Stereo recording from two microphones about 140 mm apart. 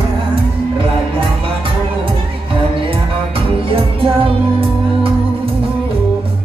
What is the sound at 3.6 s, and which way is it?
Music, 40° right (ahead or behind).